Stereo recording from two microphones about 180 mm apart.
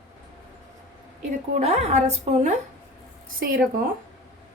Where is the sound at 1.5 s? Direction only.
40° right (ahead or behind).